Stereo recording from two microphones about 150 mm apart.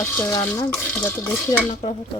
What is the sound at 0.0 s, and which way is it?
Stir, 15° left (ahead or behind).